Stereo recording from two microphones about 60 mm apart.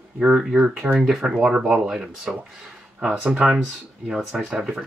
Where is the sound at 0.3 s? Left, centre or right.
Centre.